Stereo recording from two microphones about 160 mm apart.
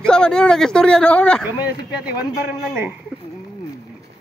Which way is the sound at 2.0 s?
10° right (ahead or behind).